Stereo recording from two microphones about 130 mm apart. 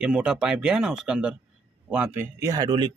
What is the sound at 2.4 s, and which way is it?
Speech, 30° right (ahead or behind).